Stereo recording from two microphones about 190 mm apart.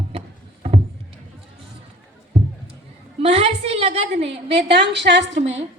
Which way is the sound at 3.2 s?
35° right (ahead or behind).